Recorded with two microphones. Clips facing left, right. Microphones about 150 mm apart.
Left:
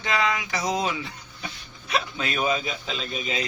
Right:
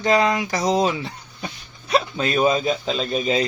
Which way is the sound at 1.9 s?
35° right (ahead or behind).